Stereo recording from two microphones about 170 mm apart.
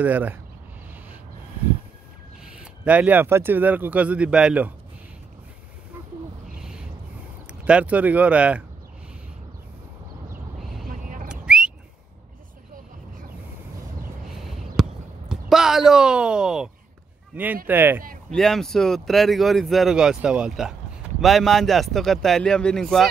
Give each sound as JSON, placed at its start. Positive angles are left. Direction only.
{"t": 0.0, "sound": "speech", "side_deg": -10}
{"t": 2.4, "sound": "speech", "side_deg": -5}
{"t": 7.6, "sound": "speech", "side_deg": -5}
{"t": 10.9, "sound": "a sound", "side_deg": -55}
{"t": 11.2, "sound": "whistling", "side_deg": -5}
{"t": 14.3, "sound": "basketball bounce", "side_deg": 0}
{"t": 17.3, "sound": "speech", "side_deg": -10}
{"t": 18.3, "sound": "speech", "side_deg": 0}